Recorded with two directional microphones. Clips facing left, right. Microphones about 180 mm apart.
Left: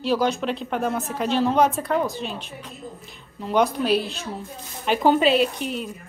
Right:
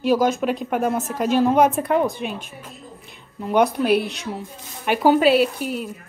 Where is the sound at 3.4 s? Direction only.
10° right (ahead or behind).